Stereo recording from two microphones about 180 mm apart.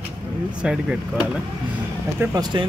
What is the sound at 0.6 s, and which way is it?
Speech, 5° right (ahead or behind).